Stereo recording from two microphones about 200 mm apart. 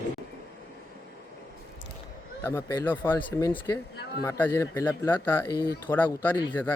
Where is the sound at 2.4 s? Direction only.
15° left (ahead or behind).